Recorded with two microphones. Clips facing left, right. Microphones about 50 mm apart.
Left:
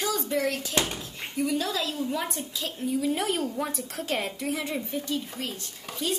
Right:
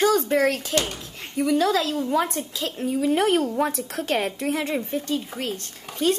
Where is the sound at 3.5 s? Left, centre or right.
Right.